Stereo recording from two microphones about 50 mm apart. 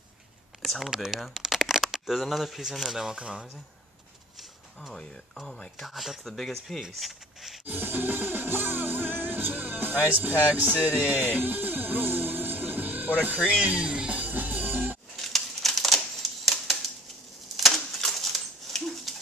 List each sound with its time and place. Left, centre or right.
0.6 s a sound: centre
0.8 s speech: centre
3.2 s speech: centre
4.9 s speech: centre
7.6 s music: right
13.6 s speech: right
14.2 s music: right
15.1 s typewriter: centre
17.9 s bird: centre